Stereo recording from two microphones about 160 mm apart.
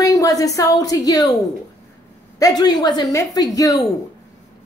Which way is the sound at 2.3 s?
25° left (ahead or behind).